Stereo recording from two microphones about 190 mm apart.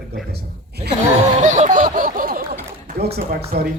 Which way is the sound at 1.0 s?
40° right (ahead or behind).